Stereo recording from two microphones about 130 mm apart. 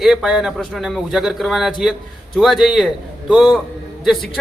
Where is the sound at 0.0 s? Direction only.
5° right (ahead or behind).